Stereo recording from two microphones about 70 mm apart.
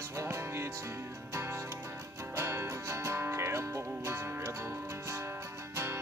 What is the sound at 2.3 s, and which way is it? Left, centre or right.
Music, right.